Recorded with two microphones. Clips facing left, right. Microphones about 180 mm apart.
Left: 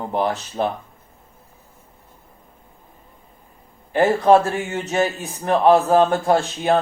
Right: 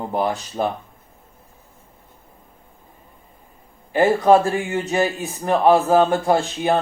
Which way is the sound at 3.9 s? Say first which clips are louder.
Even; centre (ahead or behind).